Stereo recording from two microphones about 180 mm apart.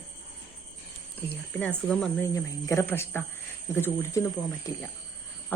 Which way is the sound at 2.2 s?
15° left (ahead or behind).